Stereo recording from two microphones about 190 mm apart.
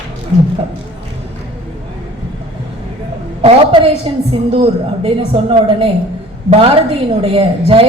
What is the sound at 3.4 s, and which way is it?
A man's voice, 30° right (ahead or behind).